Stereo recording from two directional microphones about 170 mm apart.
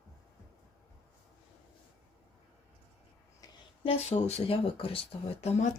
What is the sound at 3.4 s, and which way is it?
Speech, 35° left (ahead or behind).